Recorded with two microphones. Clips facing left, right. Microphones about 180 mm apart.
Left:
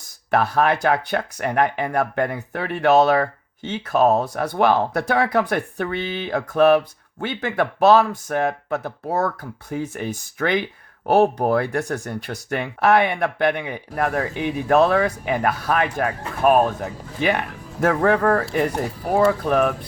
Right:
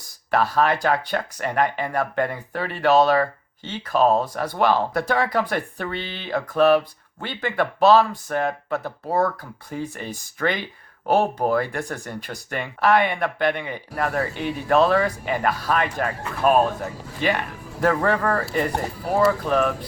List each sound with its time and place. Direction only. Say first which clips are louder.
0.3 s speech: left 1 dB; 55° left (ahead or behind)